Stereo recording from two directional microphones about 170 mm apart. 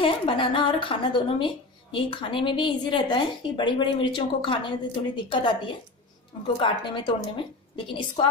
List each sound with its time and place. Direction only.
0.0 s a woman's voice: 30° left (ahead or behind)